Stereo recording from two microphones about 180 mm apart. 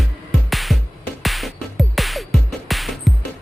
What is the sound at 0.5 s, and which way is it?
Music, centre (ahead or behind).